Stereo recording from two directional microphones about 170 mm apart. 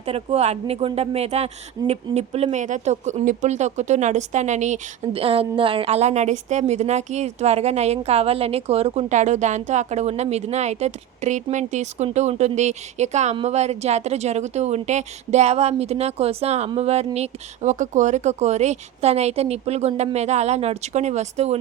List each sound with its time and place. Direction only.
0.0 s speech: 35° right (ahead or behind)